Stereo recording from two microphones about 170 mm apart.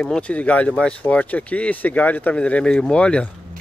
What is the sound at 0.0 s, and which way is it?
Speech, 5° left (ahead or behind).